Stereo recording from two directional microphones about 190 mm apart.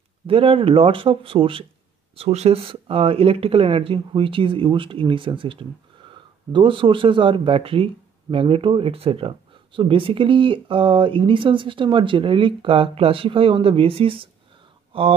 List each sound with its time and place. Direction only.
0.3 s speech: 30° right (ahead or behind)